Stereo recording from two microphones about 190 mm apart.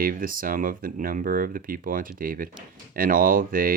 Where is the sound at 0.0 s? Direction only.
50° right (ahead or behind).